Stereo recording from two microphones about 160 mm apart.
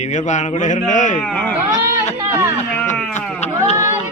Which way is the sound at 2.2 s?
15° right (ahead or behind).